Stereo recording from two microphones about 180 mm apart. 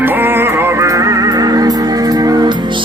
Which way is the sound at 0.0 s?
10° right (ahead or behind).